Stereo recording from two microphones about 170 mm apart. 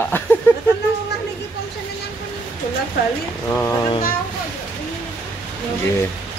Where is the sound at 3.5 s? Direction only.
20° left (ahead or behind).